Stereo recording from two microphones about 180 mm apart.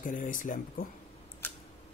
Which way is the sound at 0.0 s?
45° left (ahead or behind).